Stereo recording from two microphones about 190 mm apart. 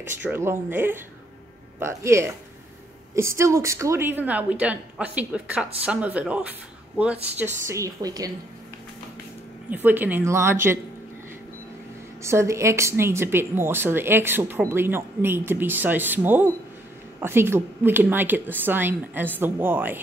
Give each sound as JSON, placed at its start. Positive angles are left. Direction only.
{"t": 0.2, "sound": "speech", "side_deg": -10}
{"t": 9.7, "sound": "speech", "side_deg": -10}
{"t": 12.2, "sound": "speech", "side_deg": -15}